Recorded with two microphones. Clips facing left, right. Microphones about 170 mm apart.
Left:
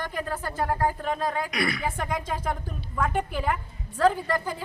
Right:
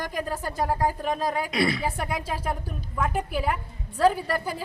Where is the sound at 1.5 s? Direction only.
25° right (ahead or behind).